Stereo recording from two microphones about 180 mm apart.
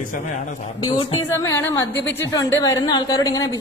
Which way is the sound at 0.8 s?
25° left (ahead or behind).